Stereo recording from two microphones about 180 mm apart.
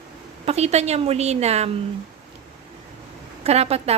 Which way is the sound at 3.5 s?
35° right (ahead or behind).